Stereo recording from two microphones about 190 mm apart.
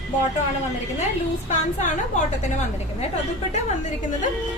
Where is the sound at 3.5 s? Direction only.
40° left (ahead or behind).